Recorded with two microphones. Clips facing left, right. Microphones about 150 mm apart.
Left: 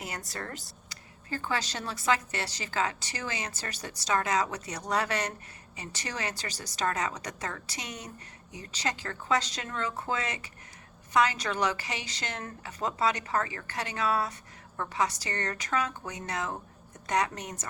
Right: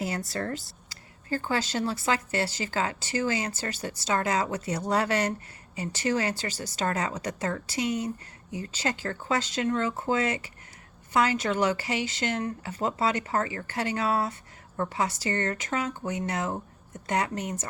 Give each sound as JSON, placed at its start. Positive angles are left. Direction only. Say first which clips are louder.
{"t": 0.0, "sound": "speech", "louder": "right 8 dB", "side_deg": -30}